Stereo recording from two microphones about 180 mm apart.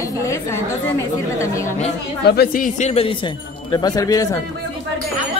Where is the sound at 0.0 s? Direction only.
15° left (ahead or behind).